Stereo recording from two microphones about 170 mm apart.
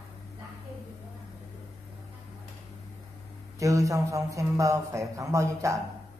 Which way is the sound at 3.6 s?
20° right (ahead or behind).